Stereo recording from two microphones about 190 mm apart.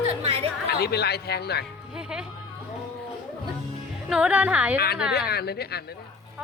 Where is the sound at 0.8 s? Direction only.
60° left (ahead or behind).